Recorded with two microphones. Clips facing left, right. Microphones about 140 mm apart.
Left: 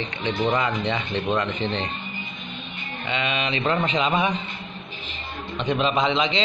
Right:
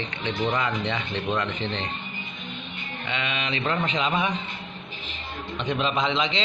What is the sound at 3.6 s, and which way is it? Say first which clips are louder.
Speech: left 3 dB; 15° left (ahead or behind).